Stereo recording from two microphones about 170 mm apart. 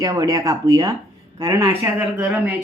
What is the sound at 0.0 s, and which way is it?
Speech, 20° right (ahead or behind).